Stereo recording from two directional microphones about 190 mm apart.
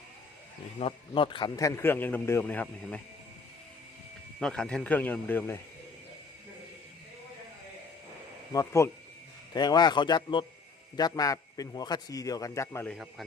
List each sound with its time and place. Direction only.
0.8 s a man's voice: 30° left (ahead or behind); by 3.0 s 10° left (ahead or behind)
4.4 s a man's voice: 5° left (ahead or behind)
8.5 s a man's voice: 15° left (ahead or behind)
12.9 s speech: centre (ahead or behind)